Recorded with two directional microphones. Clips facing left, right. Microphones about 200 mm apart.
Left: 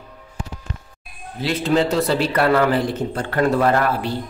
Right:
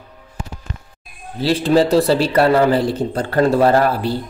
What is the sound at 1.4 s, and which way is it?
A man's voice, 35° right (ahead or behind).